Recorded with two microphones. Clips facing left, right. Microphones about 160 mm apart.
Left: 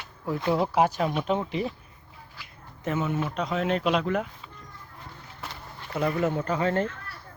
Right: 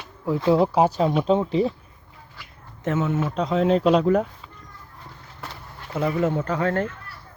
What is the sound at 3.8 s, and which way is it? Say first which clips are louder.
Speech: right 7 dB; 35° right (ahead or behind).